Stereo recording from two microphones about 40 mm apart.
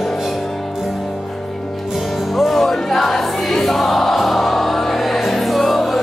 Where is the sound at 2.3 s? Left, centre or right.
Centre.